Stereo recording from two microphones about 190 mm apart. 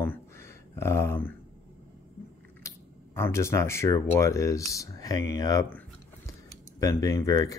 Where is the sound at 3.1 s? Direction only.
15° left (ahead or behind).